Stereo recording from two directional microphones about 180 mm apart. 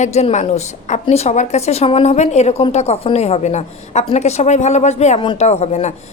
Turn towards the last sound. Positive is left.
turn(degrees=40)  # may be behind; listen again after turning